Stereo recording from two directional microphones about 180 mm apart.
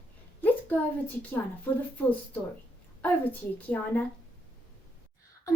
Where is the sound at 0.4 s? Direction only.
10° left (ahead or behind).